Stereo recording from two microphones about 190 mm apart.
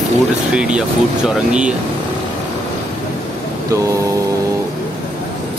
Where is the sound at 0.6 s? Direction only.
5° right (ahead or behind).